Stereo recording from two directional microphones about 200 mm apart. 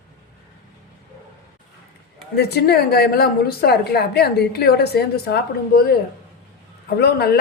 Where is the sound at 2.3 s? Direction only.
55° left (ahead or behind).